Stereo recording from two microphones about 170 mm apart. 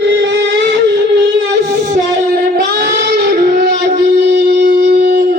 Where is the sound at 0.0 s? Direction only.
85° right.